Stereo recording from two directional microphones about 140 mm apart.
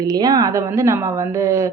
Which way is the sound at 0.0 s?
30° right (ahead or behind).